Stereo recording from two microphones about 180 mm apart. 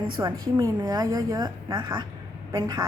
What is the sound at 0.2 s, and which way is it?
A woman's voice, 20° right (ahead or behind).